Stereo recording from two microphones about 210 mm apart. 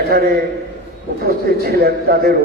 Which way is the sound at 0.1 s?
45° right (ahead or behind).